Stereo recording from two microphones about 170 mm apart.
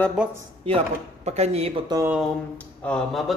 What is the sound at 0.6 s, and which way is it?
Speech, 40° right (ahead or behind).